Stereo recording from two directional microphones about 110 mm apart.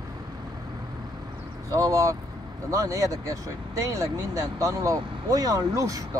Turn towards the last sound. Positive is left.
turn(degrees=-30)  # may be behind; listen again after turning